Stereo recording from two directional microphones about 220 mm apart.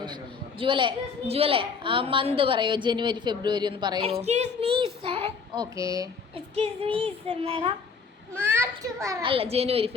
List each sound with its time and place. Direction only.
0.6 s a woman's voice: 20° right (ahead or behind)
5.7 s a woman's voice: 15° right (ahead or behind)
8.4 s a woman's voice: 10° right (ahead or behind); by 9.9 s 25° right (ahead or behind)